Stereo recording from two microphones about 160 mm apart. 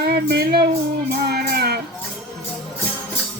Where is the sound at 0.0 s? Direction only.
80° right.